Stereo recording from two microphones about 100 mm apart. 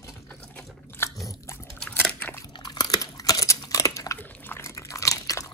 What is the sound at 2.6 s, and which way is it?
Crunch, 45° left (ahead or behind).